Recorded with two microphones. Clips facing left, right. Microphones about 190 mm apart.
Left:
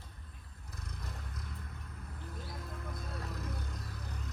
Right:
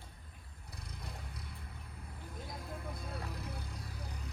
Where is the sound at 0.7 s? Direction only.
35° right (ahead or behind).